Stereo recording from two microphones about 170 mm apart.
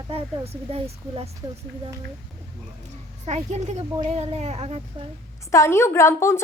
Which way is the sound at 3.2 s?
40° right (ahead or behind).